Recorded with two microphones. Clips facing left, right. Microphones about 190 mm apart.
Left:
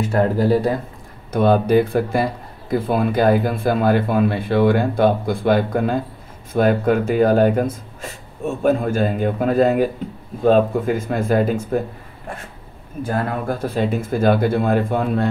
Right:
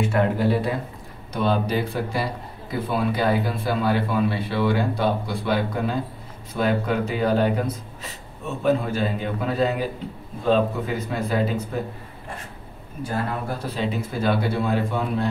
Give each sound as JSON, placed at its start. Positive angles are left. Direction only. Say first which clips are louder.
{"t": 0.0, "sound": "speech", "louder": "left 3 dB", "side_deg": 40}
{"t": 1.3, "sound": "speech", "louder": "left 8 dB", "side_deg": 50}
{"t": 13.0, "sound": "speech", "louder": "left 5 dB", "side_deg": 50}